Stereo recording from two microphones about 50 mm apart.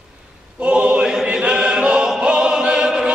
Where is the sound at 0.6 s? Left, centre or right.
Right.